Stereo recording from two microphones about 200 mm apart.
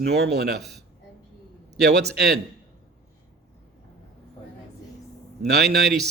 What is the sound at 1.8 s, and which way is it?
Speech, 55° right (ahead or behind).